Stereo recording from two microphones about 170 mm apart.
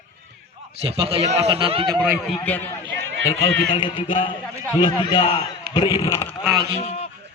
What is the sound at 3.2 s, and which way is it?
A man's voice, 20° left (ahead or behind).